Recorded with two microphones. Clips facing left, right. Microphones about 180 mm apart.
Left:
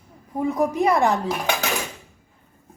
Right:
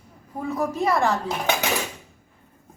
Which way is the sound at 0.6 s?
15° left (ahead or behind).